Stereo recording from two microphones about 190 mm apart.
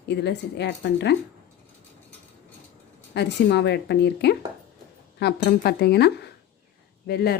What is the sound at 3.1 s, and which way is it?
A woman's voice, 60° left (ahead or behind).